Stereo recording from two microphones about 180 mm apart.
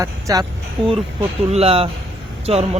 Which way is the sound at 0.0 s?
20° right (ahead or behind).